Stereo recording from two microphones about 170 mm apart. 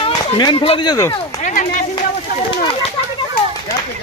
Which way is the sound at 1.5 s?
50° left (ahead or behind).